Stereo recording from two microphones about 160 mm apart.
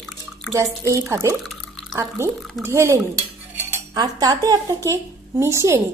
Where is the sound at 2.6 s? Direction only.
15° right (ahead or behind).